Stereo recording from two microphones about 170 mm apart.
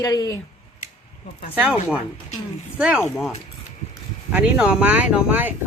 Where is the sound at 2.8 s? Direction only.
5° right (ahead or behind).